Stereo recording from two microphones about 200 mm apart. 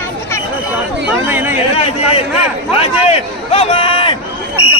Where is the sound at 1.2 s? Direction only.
10° right (ahead or behind).